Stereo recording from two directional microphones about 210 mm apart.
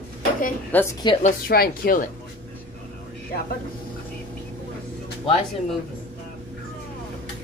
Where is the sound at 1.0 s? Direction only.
25° left (ahead or behind).